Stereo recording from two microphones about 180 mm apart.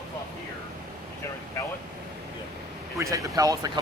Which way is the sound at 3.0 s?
20° right (ahead or behind).